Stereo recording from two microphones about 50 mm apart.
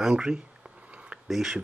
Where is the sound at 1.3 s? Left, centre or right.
Centre.